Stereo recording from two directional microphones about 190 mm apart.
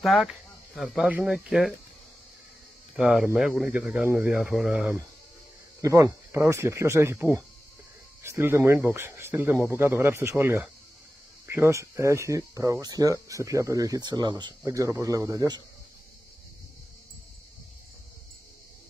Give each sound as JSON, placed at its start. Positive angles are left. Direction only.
{"t": 0.0, "sound": "speech", "side_deg": 0}
{"t": 3.0, "sound": "speech", "side_deg": 0}
{"t": 5.8, "sound": "speech", "side_deg": -15}